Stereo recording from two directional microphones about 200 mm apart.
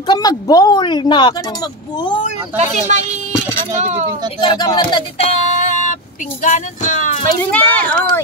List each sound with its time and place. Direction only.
0.0 s speech: 20° left (ahead or behind)
2.5 s speech: 35° right (ahead or behind)
4.4 s speech: 20° left (ahead or behind); by 7.2 s 35° left (ahead or behind)
7.5 s speech: 5° left (ahead or behind)